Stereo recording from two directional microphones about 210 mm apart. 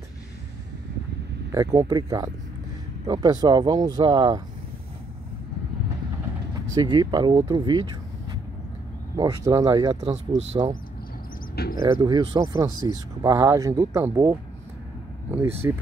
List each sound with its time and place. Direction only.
1.5 s speech: 15° right (ahead or behind)
6.5 s speech: 20° right (ahead or behind)
9.9 s speech: 30° right (ahead or behind)
11.5 s speech: 50° left (ahead or behind)
11.8 s speech: 15° right (ahead or behind)
15.6 s speech: 15° right (ahead or behind)